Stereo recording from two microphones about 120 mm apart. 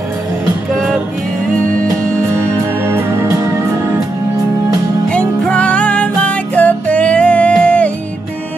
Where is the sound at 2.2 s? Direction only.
20° right (ahead or behind).